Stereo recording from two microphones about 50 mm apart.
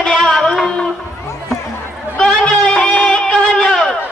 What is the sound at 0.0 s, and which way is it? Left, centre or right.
Music, centre.